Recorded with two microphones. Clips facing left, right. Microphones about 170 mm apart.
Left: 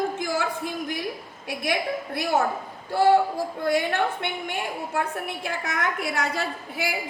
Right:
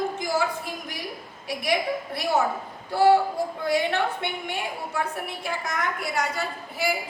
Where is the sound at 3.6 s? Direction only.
50° left (ahead or behind).